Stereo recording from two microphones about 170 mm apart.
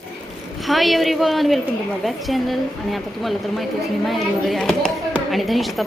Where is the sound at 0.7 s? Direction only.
Centre (ahead or behind).